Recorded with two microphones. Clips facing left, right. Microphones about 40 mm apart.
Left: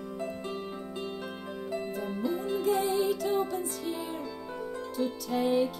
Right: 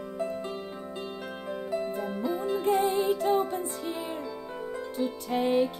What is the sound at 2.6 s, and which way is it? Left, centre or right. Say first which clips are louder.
Music: right 2 dB; right.